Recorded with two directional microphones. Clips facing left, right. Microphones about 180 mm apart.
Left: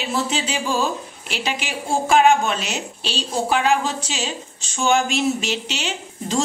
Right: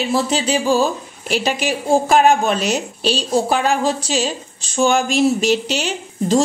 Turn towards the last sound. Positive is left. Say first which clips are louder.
# right 8 dB
turn(degrees=-40)  # may be behind; listen again after turning